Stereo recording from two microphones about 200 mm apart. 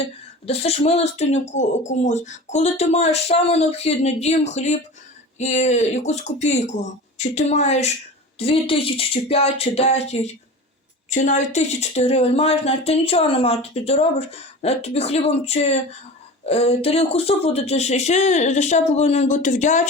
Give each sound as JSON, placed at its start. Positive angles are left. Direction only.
{"t": 0.4, "sound": "speech", "side_deg": 30}